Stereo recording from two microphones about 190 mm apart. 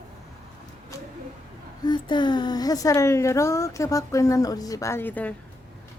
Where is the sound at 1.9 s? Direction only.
25° left (ahead or behind).